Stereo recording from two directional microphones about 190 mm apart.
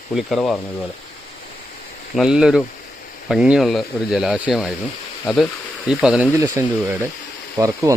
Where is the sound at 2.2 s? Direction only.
5° right (ahead or behind).